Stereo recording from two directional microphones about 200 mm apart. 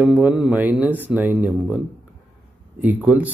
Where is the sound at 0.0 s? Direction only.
5° right (ahead or behind).